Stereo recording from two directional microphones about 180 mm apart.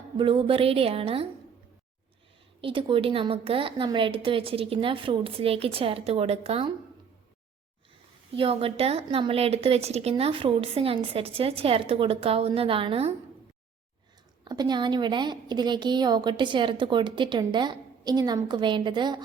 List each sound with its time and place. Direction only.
0.2 s a woman's voice: 30° right (ahead or behind)
2.6 s a woman's voice: 30° right (ahead or behind)
8.3 s a woman's voice: 30° right (ahead or behind)
14.4 s a woman's voice: 25° right (ahead or behind)